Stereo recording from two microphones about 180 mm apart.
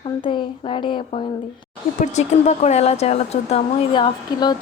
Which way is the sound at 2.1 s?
40° left (ahead or behind).